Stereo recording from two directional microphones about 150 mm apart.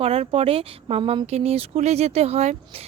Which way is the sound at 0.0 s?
40° right (ahead or behind).